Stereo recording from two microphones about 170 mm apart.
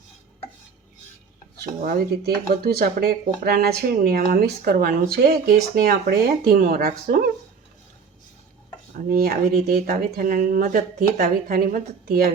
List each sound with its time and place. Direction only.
1.8 s speech: 60° right (ahead or behind)
9.1 s speech: 65° right (ahead or behind)